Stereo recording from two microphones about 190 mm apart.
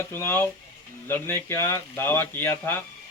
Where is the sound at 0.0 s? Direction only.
10° left (ahead or behind).